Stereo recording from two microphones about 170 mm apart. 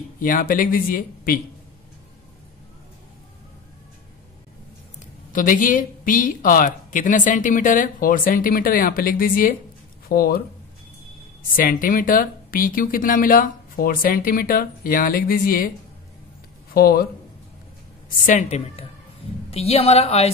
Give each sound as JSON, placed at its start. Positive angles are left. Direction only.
{"t": 0.2, "sound": "speech", "side_deg": 55}
{"t": 5.3, "sound": "speech", "side_deg": 50}
{"t": 11.5, "sound": "speech", "side_deg": 55}
{"t": 16.7, "sound": "speech", "side_deg": 60}
{"t": 18.2, "sound": "a woman's voice", "side_deg": 45}